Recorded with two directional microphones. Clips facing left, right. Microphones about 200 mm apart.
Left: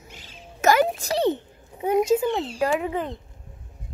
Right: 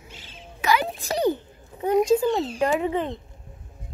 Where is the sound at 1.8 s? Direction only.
10° left (ahead or behind).